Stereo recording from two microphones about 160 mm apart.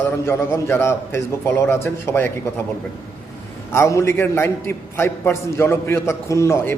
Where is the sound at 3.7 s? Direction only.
15° left (ahead or behind).